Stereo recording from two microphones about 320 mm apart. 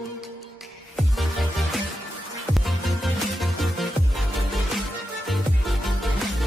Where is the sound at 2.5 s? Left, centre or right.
Centre.